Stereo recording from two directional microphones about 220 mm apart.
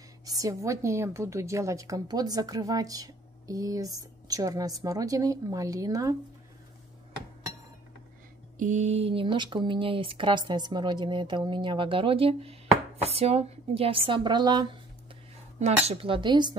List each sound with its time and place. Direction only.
0.2 s a woman's voice: 15° right (ahead or behind)
8.5 s speech: 35° right (ahead or behind)